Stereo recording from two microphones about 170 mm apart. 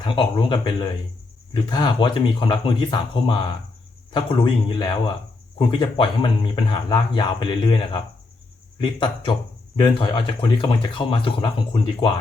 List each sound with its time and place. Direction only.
0.0 s speech: 30° left (ahead or behind)